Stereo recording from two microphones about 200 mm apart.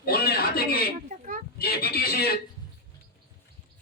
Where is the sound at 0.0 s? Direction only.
50° left (ahead or behind).